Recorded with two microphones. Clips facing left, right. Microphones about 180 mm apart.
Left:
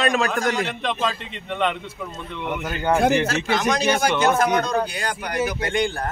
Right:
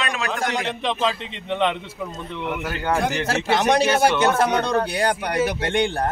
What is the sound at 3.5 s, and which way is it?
Speech, 65° right (ahead or behind).